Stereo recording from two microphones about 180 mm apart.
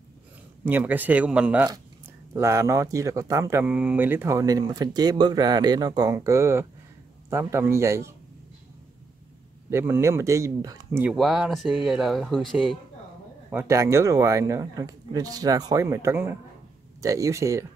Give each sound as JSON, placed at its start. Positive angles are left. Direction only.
{"t": 0.7, "sound": "speech", "side_deg": -10}
{"t": 9.7, "sound": "speech", "side_deg": -15}
{"t": 11.1, "sound": "speech", "side_deg": 0}
{"t": 13.5, "sound": "speech", "side_deg": -15}